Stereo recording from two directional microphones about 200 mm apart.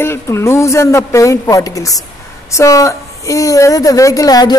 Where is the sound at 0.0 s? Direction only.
10° left (ahead or behind).